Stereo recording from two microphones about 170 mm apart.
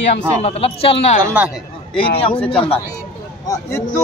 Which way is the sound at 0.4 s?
35° left (ahead or behind).